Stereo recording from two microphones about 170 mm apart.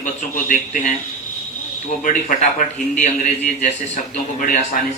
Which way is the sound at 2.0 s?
45° left (ahead or behind).